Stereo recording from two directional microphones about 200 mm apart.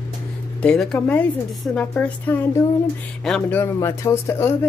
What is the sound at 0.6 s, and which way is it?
Speech, 5° left (ahead or behind).